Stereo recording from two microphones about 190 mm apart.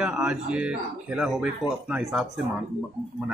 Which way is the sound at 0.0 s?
5° right (ahead or behind).